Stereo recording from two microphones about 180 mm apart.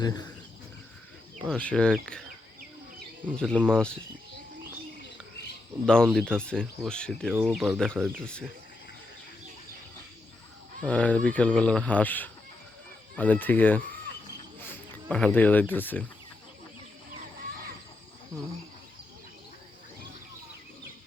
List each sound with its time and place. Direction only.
0.0 s speech: 25° left (ahead or behind)
1.5 s speech: 5° left (ahead or behind)
3.3 s speech: 5° left (ahead or behind)
5.8 s speech: 5° left (ahead or behind)
10.8 s speech: 5° left (ahead or behind)
15.1 s speech: 10° left (ahead or behind)